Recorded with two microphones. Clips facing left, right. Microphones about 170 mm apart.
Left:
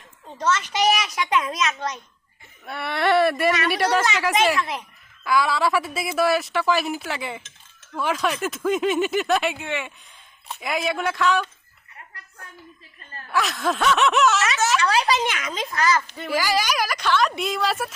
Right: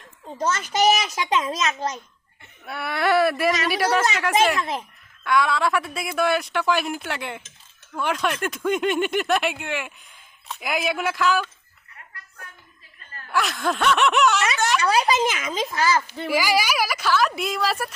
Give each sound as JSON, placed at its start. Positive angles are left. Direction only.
{"t": 0.3, "sound": "speech", "side_deg": -35}
{"t": 1.1, "sound": "a child's voice", "side_deg": -25}
{"t": 2.6, "sound": "a woman's voice", "side_deg": 0}
{"t": 13.3, "sound": "a woman's voice", "side_deg": 0}